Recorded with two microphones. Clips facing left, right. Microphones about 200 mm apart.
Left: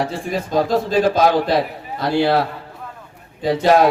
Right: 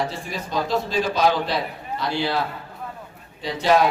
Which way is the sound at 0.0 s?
50° left (ahead or behind).